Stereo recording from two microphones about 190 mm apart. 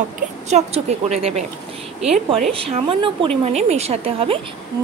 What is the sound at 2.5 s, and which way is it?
A woman's voice, 30° right (ahead or behind).